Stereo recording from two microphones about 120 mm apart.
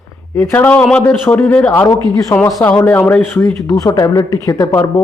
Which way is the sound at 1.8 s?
25° left (ahead or behind).